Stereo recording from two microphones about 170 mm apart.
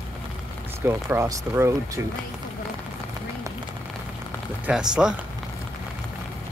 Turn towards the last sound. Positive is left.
turn(degrees=-5)  # may be behind; listen again after turning